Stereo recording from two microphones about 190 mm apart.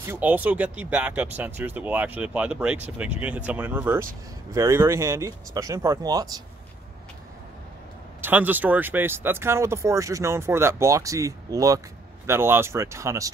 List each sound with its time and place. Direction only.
0.0 s speech: 10° right (ahead or behind)
8.2 s speech: 10° right (ahead or behind)